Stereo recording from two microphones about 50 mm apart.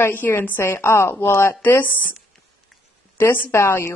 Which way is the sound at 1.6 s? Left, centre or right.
Left.